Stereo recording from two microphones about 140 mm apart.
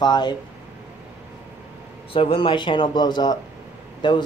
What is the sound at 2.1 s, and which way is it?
Speech, 40° left (ahead or behind).